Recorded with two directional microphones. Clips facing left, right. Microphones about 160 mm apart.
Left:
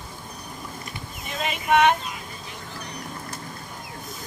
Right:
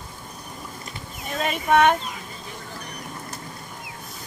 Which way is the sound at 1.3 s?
45° right (ahead or behind).